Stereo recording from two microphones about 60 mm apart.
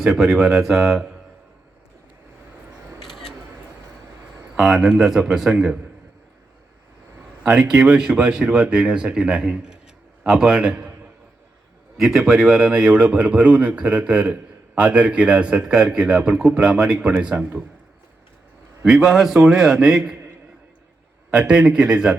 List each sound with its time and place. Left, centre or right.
0.0 s a man's voice: centre
3.0 s camera: centre
4.5 s a man's voice: centre
7.4 s speech: centre
11.9 s a man's voice: centre
18.9 s a man's voice: centre
21.3 s a man's voice: centre